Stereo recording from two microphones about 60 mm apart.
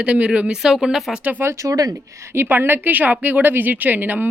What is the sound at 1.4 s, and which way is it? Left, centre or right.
Speech, right.